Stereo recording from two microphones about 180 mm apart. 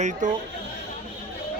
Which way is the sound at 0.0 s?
45° right (ahead or behind).